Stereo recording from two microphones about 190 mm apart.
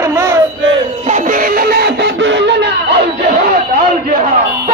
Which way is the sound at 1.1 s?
45° right (ahead or behind).